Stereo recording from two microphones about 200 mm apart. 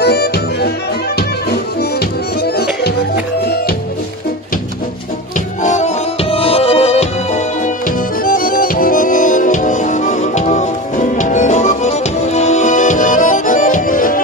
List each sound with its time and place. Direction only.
0.0 s music: 55° left (ahead or behind)
1.8 s music: 50° left (ahead or behind)
5.6 s music: 35° left (ahead or behind)
8.2 s music: 45° left (ahead or behind)